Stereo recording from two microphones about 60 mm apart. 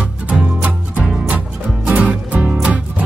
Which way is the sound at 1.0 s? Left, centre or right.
Centre.